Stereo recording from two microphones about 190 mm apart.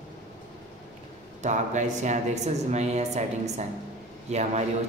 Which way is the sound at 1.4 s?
40° right (ahead or behind).